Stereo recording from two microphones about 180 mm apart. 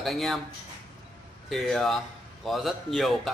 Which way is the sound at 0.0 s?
Centre (ahead or behind).